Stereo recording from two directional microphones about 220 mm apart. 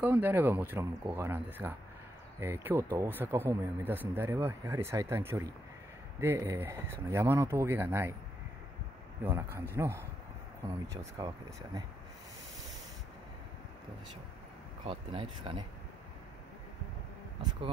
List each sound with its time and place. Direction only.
0.0 s speech: 10° right (ahead or behind)
9.2 s speech: 10° right (ahead or behind)
14.9 s speech: 25° right (ahead or behind)